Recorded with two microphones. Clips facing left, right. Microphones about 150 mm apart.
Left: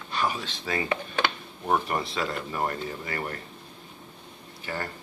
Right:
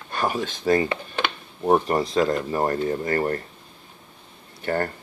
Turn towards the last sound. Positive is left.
turn(degrees=-55)  # may be behind; listen again after turning